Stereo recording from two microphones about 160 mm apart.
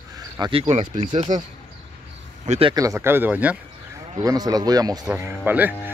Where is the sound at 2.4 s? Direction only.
45° right (ahead or behind).